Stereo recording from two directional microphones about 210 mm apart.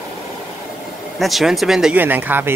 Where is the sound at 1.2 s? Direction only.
Centre (ahead or behind).